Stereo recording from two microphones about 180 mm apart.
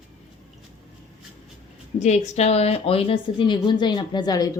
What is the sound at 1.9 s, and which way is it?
A woman's voice, 40° left (ahead or behind).